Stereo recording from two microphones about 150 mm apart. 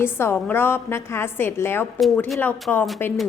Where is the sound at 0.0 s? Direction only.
15° left (ahead or behind).